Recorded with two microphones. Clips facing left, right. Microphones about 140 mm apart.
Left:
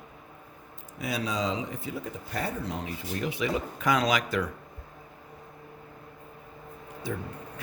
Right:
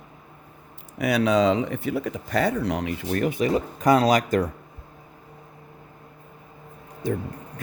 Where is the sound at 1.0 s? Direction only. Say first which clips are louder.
Right 11 dB; 70° right (ahead or behind).